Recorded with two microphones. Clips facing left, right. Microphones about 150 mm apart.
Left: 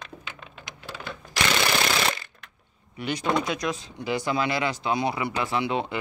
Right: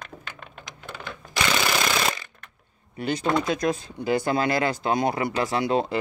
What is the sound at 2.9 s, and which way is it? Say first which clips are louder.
Speech: right 2 dB; 40° right (ahead or behind).